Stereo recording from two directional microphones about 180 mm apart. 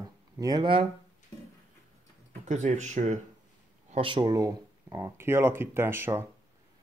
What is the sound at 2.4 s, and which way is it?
Speech, 40° right (ahead or behind).